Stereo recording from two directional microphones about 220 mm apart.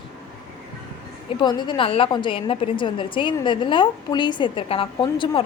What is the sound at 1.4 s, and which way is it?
A woman's voice, 20° left (ahead or behind).